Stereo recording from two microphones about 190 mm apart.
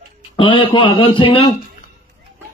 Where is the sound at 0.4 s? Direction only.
25° left (ahead or behind).